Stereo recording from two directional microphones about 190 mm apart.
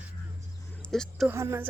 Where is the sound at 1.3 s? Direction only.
15° right (ahead or behind).